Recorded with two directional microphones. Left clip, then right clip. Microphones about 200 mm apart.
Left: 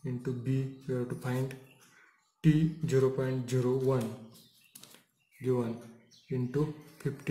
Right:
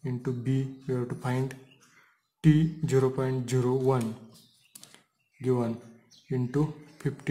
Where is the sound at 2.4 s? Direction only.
35° right (ahead or behind).